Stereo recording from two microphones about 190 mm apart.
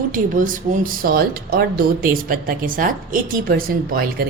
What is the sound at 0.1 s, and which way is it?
Speech, 45° right (ahead or behind).